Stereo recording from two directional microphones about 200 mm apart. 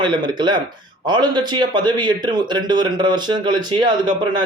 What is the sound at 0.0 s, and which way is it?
Speech, 25° right (ahead or behind).